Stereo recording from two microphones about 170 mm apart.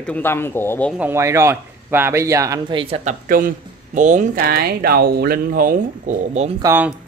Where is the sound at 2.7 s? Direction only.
35° right (ahead or behind).